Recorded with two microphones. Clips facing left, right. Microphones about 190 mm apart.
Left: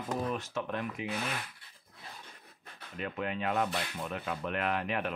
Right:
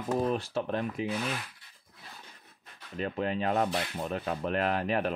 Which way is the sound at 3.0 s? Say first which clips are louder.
Right 4 dB; 35° right (ahead or behind).